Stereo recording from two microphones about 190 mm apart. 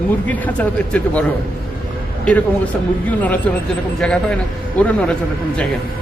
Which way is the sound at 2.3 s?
10° left (ahead or behind).